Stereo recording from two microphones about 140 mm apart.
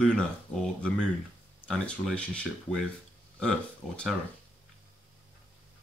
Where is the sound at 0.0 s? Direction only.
5° left (ahead or behind).